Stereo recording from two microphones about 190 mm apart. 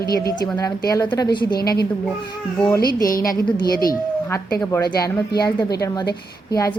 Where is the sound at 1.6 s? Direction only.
55° left (ahead or behind).